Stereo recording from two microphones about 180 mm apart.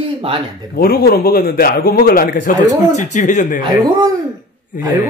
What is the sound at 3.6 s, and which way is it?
Speech, 20° right (ahead or behind).